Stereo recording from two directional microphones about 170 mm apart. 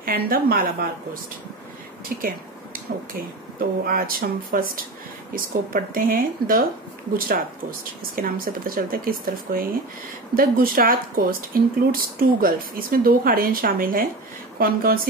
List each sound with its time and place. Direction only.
0.0 s speech: 60° right (ahead or behind)
2.0 s speech: 55° right (ahead or behind)
8.2 s speech: 55° right (ahead or behind)